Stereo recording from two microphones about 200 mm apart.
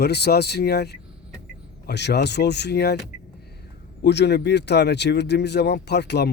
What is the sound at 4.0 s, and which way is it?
Speech, 60° left (ahead or behind).